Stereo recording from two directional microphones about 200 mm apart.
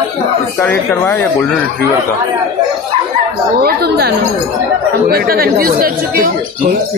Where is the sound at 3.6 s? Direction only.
50° right (ahead or behind).